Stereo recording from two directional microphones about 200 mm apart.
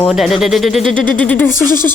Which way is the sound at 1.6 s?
45° left (ahead or behind).